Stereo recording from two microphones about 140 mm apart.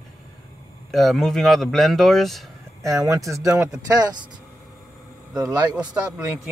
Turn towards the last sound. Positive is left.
turn(degrees=-30)  # may be behind; listen again after turning